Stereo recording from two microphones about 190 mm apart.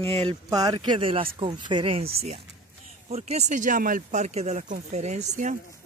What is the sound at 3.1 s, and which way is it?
Speech, 35° right (ahead or behind).